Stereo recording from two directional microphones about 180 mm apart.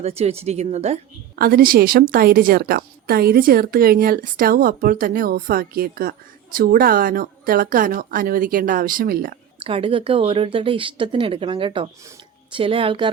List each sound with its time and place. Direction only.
0.0 s speech: 35° right (ahead or behind)
1.4 s a woman's voice: 55° right (ahead or behind)
9.6 s speech: 30° right (ahead or behind)